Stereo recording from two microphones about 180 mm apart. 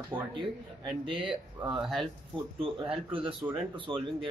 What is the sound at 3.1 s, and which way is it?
Speech, 30° right (ahead or behind).